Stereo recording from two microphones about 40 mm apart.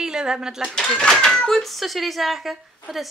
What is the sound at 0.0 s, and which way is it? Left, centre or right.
Speech, centre.